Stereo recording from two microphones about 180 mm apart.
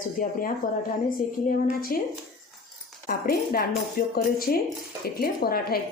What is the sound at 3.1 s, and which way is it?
A woman's voice, 55° left (ahead or behind).